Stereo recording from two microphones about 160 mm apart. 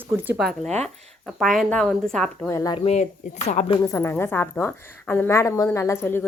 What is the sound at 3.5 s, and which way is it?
Speech, 45° left (ahead or behind).